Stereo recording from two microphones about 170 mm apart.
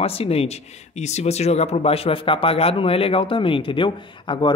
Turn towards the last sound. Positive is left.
turn(degrees=30)  # may be behind; listen again after turning